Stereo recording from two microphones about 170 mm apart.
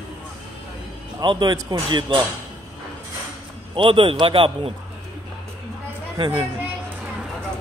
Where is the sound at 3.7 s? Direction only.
30° right (ahead or behind).